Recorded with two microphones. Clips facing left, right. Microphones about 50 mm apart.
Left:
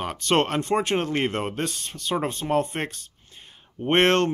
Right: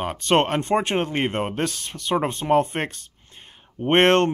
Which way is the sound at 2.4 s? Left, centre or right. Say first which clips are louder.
Right 4 dB; right.